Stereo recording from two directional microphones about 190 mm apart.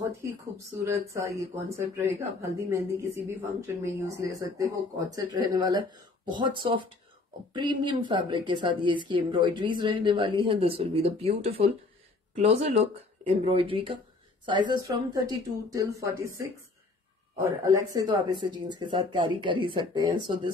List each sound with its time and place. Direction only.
1.1 s speech: 15° right (ahead or behind)